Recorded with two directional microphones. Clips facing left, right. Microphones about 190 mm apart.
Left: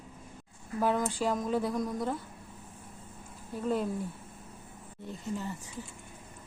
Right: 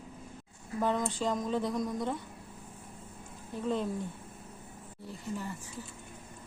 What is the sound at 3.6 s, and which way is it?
Speech, 5° left (ahead or behind).